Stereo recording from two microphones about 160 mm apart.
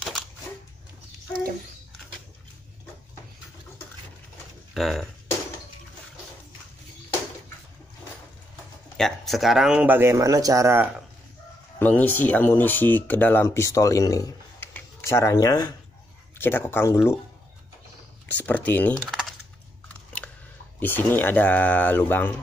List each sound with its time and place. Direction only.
4.7 s speech: centre (ahead or behind)
8.9 s speech: centre (ahead or behind); by 10.9 s 15° right (ahead or behind)
11.8 s speech: 10° left (ahead or behind)
14.7 s a sound: 15° left (ahead or behind)
16.3 s speech: 15° left (ahead or behind)
18.3 s speech: 10° left (ahead or behind)
19.0 s typing: centre (ahead or behind)
20.2 s a sound: 5° left (ahead or behind)
20.8 s speech: 10° left (ahead or behind)